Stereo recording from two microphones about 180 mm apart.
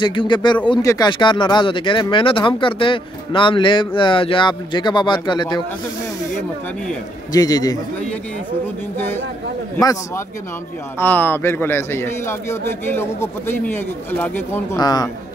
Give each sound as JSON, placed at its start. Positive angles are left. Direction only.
{"t": 0.0, "sound": "speech", "side_deg": 25}
{"t": 7.3, "sound": "speech", "side_deg": 20}
{"t": 8.9, "sound": "a man's voice", "side_deg": 10}